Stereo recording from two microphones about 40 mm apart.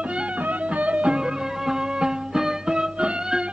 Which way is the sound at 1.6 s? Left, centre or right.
Centre.